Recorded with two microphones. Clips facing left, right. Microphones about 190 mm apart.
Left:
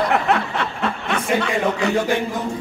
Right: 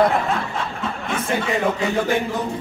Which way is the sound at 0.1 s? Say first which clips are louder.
Left 3 dB; 70° left (ahead or behind).